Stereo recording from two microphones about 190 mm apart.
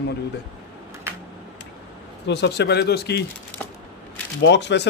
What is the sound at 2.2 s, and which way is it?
Speech, 65° left (ahead or behind).